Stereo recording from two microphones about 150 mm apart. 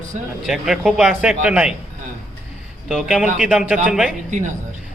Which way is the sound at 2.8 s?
Centre (ahead or behind).